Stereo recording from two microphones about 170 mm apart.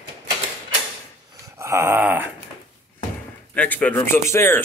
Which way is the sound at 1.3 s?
20° right (ahead or behind).